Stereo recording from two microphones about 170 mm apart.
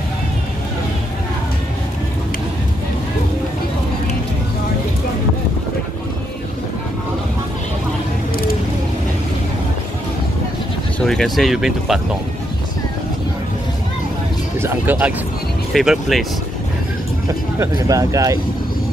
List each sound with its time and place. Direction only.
11.1 s speech: centre (ahead or behind)
14.6 s speech: 10° right (ahead or behind)
17.6 s speech: 20° right (ahead or behind)